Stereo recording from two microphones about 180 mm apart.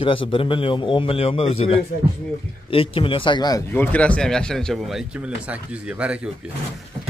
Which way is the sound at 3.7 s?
10° left (ahead or behind).